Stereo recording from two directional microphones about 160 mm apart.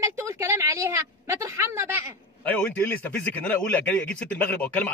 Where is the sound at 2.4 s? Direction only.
10° left (ahead or behind).